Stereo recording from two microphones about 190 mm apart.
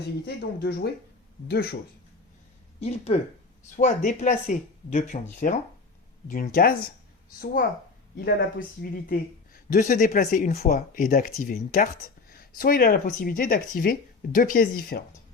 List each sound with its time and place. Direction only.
0.3 s speech: 60° left (ahead or behind)
2.8 s speech: 30° left (ahead or behind); by 6.7 s 50° left (ahead or behind)
8.2 s speech: 55° left (ahead or behind)